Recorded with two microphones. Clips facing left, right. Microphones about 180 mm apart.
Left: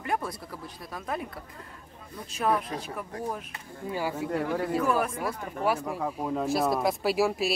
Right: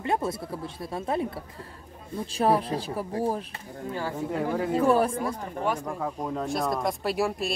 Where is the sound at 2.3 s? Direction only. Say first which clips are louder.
Right 4 dB; 30° right (ahead or behind).